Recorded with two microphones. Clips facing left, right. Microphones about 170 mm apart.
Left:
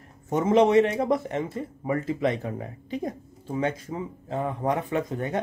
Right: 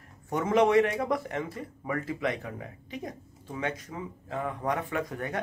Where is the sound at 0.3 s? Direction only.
25° left (ahead or behind).